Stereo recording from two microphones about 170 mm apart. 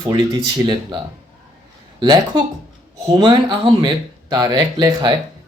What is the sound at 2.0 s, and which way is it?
Speech, 25° right (ahead or behind).